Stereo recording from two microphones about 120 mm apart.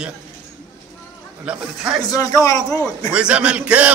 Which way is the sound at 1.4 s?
5° right (ahead or behind).